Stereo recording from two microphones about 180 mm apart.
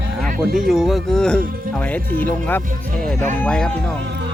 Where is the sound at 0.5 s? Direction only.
Centre (ahead or behind).